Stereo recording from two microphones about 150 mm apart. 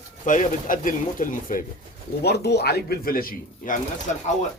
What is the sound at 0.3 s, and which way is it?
Speech, 60° left (ahead or behind).